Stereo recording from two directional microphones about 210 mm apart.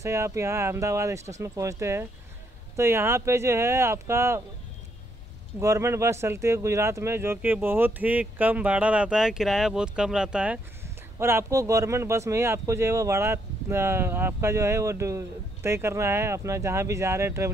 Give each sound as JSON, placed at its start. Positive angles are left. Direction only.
{"t": 0.0, "sound": "speech", "side_deg": -15}
{"t": 5.6, "sound": "speech", "side_deg": -15}